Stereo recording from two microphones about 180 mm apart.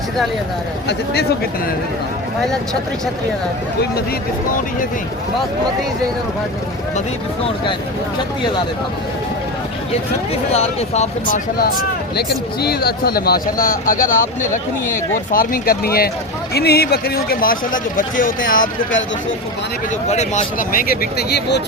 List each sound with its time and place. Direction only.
7.4 s speech: 30° left (ahead or behind)
10.5 s speech: 35° left (ahead or behind)
12.1 s speech: 60° left (ahead or behind)
20.1 s speech: 40° left (ahead or behind); by 21.6 s 65° left (ahead or behind)